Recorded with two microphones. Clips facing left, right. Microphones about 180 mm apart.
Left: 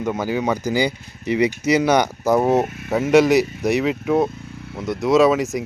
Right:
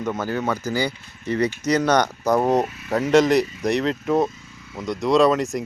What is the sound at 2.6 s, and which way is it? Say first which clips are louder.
Speech: left 4 dB; 55° left (ahead or behind).